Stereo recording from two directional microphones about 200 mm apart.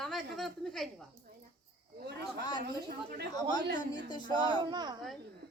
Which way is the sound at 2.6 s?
55° right (ahead or behind).